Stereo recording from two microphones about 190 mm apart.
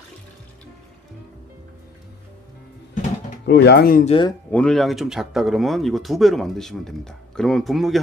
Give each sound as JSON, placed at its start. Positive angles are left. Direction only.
{"t": 3.4, "sound": "speech", "side_deg": 60}
{"t": 4.0, "sound": "speech", "side_deg": 30}
{"t": 4.5, "sound": "speech", "side_deg": 5}